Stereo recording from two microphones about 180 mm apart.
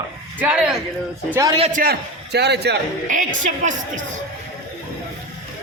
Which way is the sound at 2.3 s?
65° right (ahead or behind).